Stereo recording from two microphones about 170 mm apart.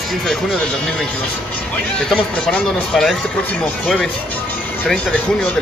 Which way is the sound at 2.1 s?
5° left (ahead or behind).